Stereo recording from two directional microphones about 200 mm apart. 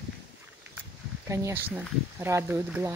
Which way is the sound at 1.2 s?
15° right (ahead or behind).